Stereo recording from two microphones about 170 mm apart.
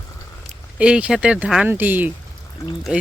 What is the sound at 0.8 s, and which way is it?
Speech, 5° right (ahead or behind).